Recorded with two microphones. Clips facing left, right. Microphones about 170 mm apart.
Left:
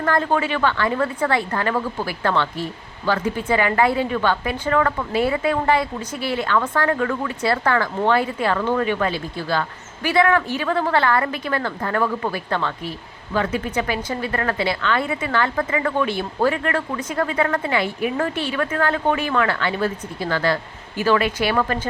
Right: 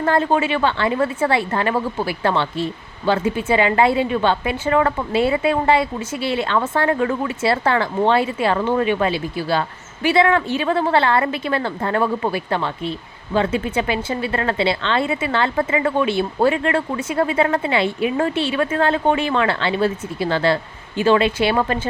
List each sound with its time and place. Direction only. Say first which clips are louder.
0.0 s a woman's voice: right 3 dB; 20° right (ahead or behind)